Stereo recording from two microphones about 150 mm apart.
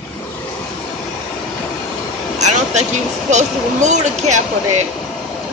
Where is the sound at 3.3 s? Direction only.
50° right (ahead or behind).